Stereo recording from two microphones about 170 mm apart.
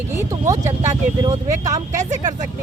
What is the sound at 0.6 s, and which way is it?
Speech, 40° right (ahead or behind).